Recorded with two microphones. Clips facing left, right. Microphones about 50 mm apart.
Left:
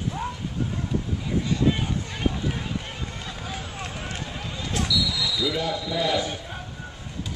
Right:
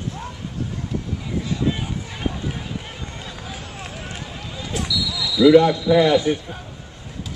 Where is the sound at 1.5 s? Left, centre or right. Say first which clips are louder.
Even; centre.